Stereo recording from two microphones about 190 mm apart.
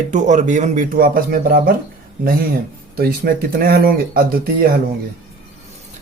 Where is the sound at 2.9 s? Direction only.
50° right (ahead or behind).